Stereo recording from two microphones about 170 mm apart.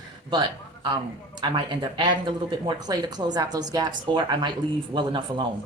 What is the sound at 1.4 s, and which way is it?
Speech, 25° right (ahead or behind).